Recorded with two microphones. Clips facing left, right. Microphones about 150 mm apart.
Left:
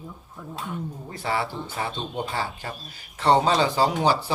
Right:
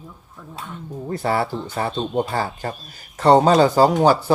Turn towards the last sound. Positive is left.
turn(degrees=-45)  # may be behind; listen again after turning